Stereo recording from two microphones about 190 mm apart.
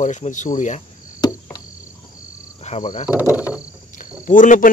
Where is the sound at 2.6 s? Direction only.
40° left (ahead or behind).